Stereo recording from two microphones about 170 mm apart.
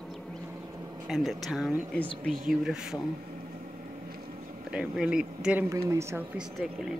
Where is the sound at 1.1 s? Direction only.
Centre (ahead or behind).